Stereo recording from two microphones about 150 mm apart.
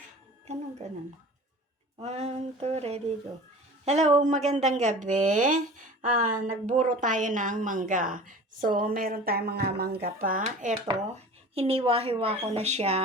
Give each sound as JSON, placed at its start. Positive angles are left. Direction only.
{"t": 2.0, "sound": "a woman's voice", "side_deg": -45}
{"t": 10.4, "sound": "speech", "side_deg": -55}
{"t": 11.5, "sound": "a woman's voice", "side_deg": -40}